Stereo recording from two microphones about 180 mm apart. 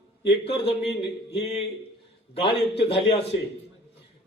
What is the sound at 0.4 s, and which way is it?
A man's voice, 30° left (ahead or behind).